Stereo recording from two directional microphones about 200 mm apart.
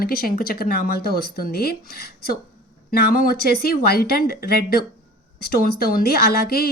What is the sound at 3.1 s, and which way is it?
A woman's voice, 45° left (ahead or behind).